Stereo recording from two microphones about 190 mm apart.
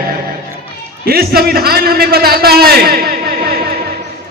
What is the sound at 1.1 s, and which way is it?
A man's voice, 55° right (ahead or behind).